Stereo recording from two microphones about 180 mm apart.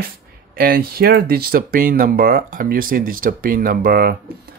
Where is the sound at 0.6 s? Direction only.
55° right (ahead or behind).